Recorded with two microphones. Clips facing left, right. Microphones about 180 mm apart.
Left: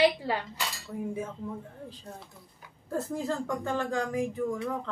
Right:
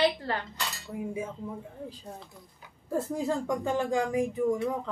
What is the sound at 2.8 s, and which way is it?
Speech, 10° right (ahead or behind).